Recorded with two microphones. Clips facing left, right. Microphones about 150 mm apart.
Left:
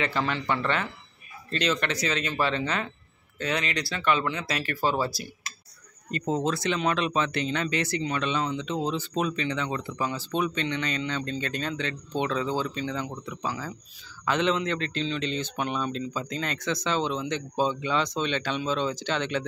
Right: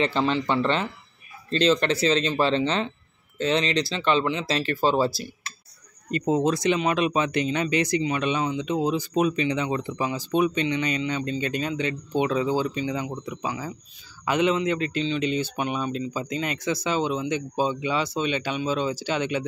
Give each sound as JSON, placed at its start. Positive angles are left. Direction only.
{"t": 0.0, "sound": "speech", "side_deg": -25}
{"t": 6.1, "sound": "speech", "side_deg": -15}